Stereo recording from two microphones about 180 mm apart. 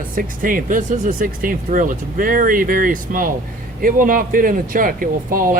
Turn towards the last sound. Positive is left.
turn(degrees=-50)  # may be behind; listen again after turning